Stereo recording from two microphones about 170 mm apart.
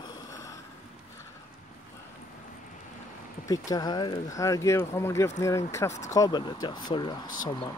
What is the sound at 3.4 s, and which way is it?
Speech, 20° left (ahead or behind).